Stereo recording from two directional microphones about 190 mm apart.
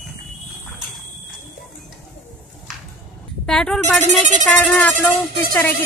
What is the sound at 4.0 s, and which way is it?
Speech, 40° right (ahead or behind).